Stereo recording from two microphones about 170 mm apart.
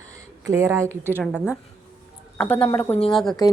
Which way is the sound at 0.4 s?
20° right (ahead or behind).